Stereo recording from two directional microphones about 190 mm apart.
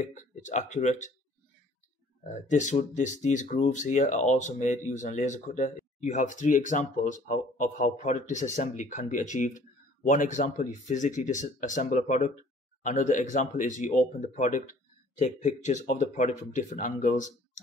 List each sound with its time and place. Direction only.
0.1 s speech: 40° left (ahead or behind)
2.3 s speech: 40° left (ahead or behind)